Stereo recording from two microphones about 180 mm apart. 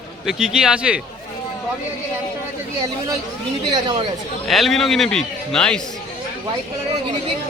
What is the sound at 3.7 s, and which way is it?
Speech, 25° right (ahead or behind).